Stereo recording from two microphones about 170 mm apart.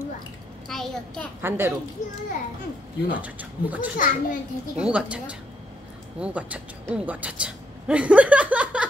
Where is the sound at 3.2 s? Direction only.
10° right (ahead or behind).